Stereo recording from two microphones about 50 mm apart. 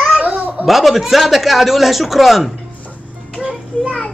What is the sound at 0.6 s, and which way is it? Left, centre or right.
Speech, centre.